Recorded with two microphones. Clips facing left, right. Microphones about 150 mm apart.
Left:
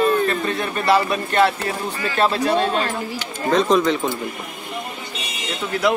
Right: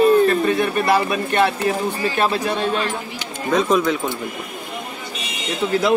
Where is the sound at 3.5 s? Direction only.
5° right (ahead or behind).